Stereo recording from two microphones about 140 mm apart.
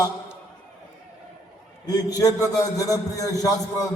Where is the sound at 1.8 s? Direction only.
25° left (ahead or behind).